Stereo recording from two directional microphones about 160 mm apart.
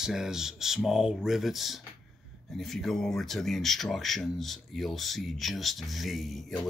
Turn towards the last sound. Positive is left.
turn(degrees=5)  # may be behind; listen again after turning